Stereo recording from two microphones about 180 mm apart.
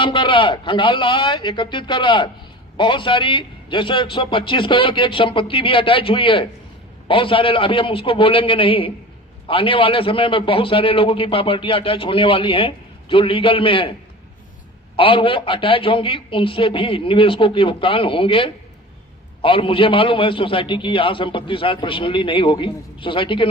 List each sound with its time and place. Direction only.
0.0 s a man's voice: 30° left (ahead or behind)
14.9 s a man's voice: 30° left (ahead or behind)